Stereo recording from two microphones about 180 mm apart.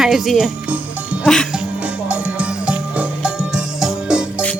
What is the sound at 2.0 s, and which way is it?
Music, 5° right (ahead or behind).